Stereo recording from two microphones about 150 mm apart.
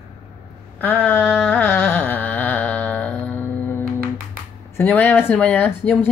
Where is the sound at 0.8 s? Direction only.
10° left (ahead or behind).